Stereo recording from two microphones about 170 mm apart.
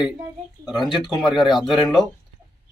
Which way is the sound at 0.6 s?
Centre (ahead or behind).